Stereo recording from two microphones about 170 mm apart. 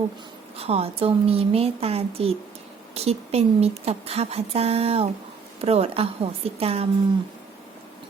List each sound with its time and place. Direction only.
0.5 s speech: 35° right (ahead or behind)